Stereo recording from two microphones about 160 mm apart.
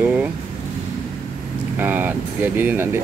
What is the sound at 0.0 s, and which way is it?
Vehicle, 10° right (ahead or behind).